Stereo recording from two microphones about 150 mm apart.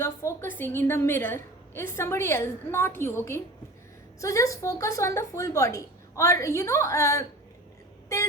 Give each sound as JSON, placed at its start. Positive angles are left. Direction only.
{"t": 0.0, "sound": "a woman's voice", "side_deg": 20}